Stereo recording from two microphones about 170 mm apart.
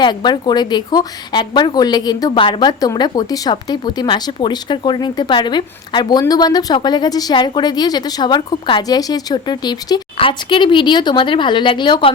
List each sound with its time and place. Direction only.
0.0 s a woman's voice: 25° left (ahead or behind)